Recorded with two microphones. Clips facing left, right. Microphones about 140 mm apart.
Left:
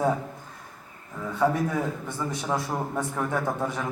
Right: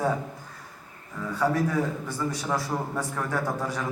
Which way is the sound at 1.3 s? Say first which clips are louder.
Even; 20° left (ahead or behind).